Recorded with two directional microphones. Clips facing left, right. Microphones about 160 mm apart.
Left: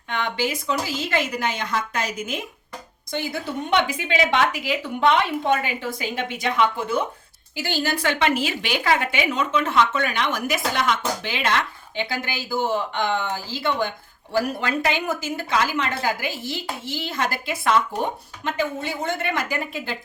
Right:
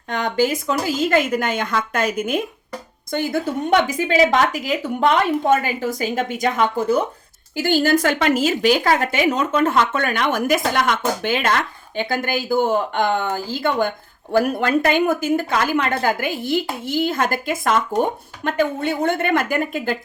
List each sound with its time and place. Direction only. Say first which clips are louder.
0.1 s speech: right 6 dB; 40° right (ahead or behind)